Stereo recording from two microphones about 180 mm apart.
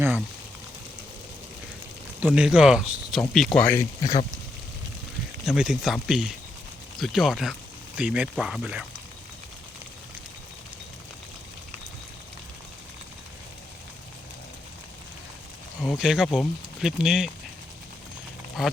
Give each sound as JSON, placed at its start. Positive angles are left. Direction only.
{"t": 2.2, "sound": "speech", "side_deg": -5}
{"t": 4.0, "sound": "speech", "side_deg": 45}
{"t": 5.5, "sound": "speech", "side_deg": 0}
{"t": 15.8, "sound": "speech", "side_deg": 0}
{"t": 18.6, "sound": "speech", "side_deg": 0}